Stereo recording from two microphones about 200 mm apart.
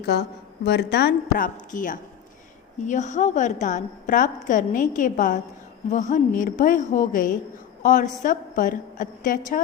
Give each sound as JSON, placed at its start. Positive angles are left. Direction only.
{"t": 0.0, "sound": "a woman's voice", "side_deg": 55}